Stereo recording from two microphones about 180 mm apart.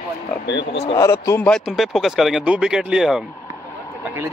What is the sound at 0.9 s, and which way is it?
Speech, 15° left (ahead or behind).